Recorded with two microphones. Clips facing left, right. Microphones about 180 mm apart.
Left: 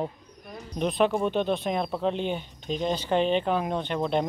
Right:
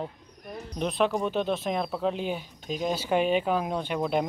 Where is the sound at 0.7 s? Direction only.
Centre (ahead or behind).